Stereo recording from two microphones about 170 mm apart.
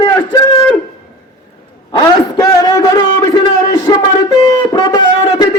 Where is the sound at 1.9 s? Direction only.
25° left (ahead or behind).